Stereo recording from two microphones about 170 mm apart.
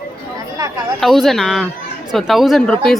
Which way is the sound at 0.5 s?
20° right (ahead or behind).